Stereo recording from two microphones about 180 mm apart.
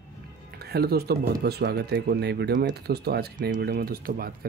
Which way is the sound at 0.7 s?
60° right (ahead or behind).